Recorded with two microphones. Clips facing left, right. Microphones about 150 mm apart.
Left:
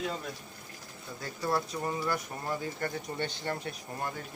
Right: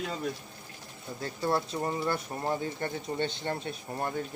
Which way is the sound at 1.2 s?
25° right (ahead or behind).